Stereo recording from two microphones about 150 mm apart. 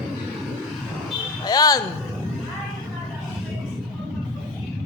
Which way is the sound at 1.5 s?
25° left (ahead or behind).